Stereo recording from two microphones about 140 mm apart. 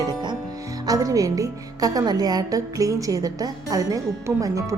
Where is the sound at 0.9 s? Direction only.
25° right (ahead or behind).